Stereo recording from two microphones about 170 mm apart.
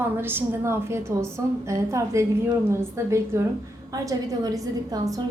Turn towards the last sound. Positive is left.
turn(degrees=-20)  # may be behind; listen again after turning